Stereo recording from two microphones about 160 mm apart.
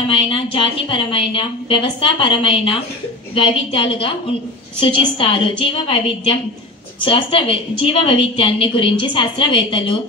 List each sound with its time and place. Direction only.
0.1 s a woman's voice: 35° left (ahead or behind)